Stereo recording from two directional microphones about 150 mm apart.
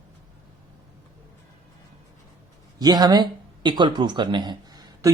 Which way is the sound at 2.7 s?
25° right (ahead or behind).